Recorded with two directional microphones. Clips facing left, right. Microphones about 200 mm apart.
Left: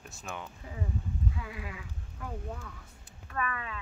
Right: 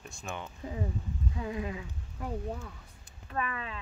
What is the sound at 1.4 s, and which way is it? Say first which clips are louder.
Speech: right 7 dB; 35° right (ahead or behind).